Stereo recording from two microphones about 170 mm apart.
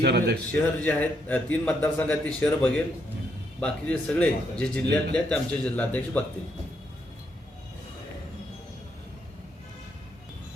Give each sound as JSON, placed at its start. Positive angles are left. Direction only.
{"t": 0.0, "sound": "a man's voice", "side_deg": -75}
{"t": 0.8, "sound": "speech", "side_deg": 10}